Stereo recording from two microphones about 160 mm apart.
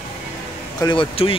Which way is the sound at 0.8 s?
30° left (ahead or behind).